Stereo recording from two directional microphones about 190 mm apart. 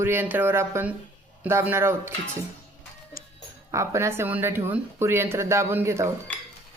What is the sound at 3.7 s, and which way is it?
Speech, 15° right (ahead or behind).